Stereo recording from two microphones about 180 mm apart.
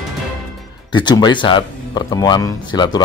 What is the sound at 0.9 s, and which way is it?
Speech, 25° left (ahead or behind).